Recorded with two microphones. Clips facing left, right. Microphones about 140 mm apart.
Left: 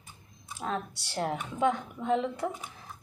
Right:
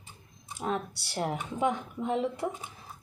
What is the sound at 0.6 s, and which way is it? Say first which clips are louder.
Speech: right 2 dB; 20° right (ahead or behind).